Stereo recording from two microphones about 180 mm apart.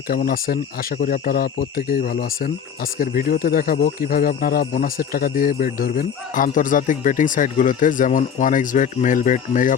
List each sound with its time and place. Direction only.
0.1 s speech: 55° left (ahead or behind)